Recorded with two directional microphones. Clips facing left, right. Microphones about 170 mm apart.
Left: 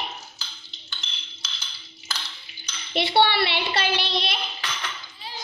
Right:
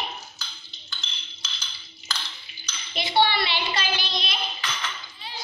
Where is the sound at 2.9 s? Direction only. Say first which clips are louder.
Left 2 dB; 65° left (ahead or behind).